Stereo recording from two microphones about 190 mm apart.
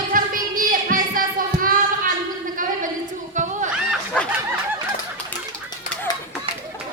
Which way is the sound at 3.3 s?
40° right (ahead or behind).